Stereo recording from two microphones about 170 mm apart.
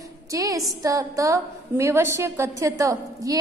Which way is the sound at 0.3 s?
20° right (ahead or behind).